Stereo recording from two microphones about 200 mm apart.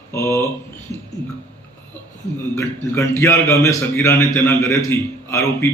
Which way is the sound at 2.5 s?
15° left (ahead or behind).